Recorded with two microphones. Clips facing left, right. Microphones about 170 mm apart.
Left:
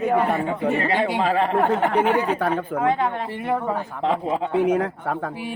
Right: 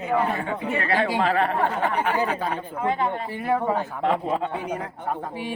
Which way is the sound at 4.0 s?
20° left (ahead or behind).